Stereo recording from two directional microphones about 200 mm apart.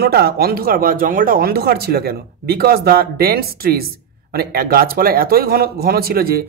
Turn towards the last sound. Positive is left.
turn(degrees=-50)  # may be behind; listen again after turning